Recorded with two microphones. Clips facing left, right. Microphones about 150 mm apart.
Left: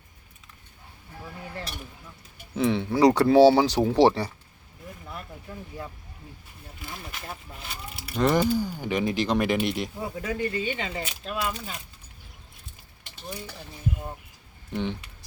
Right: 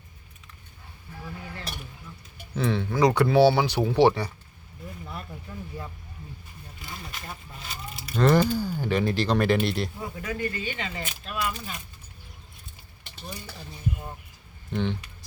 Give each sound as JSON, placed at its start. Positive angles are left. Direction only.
{"t": 2.6, "sound": "speech", "side_deg": 20}
{"t": 6.8, "sound": "speech", "side_deg": 5}
{"t": 14.7, "sound": "speech", "side_deg": 15}